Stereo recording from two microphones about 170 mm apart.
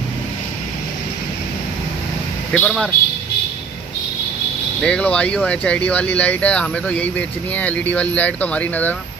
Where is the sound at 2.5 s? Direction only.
5° left (ahead or behind).